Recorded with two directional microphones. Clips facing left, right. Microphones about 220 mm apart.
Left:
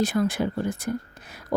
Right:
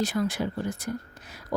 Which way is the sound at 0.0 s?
55° left (ahead or behind).